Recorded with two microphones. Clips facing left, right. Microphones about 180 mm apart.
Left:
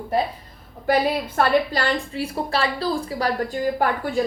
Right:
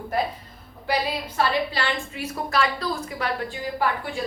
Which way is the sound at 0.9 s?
50° left (ahead or behind).